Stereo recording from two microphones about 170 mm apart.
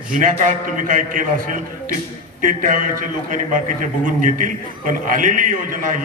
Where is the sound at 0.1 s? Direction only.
50° right (ahead or behind).